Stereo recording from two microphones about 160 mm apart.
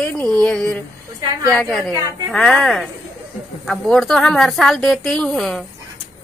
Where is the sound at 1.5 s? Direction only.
Centre (ahead or behind).